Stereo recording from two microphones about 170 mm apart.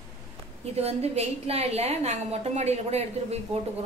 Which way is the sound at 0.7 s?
40° right (ahead or behind).